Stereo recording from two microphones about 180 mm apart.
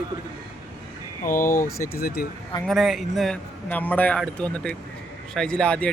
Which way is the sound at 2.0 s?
60° left (ahead or behind).